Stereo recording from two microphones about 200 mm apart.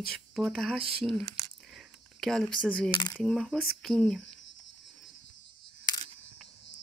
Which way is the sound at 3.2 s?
5° left (ahead or behind).